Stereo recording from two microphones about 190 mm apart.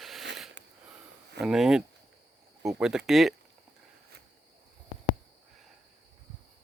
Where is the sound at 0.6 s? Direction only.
70° right (ahead or behind).